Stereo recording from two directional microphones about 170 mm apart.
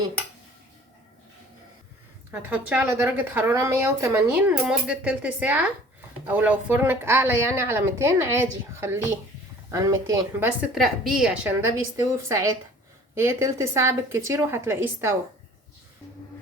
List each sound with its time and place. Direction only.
2.3 s a woman's voice: 10° right (ahead or behind)
10.8 s a woman's voice: centre (ahead or behind)
11.4 s a woman's voice: 15° right (ahead or behind)